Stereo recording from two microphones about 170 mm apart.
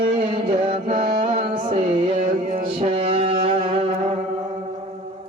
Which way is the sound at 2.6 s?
35° right (ahead or behind).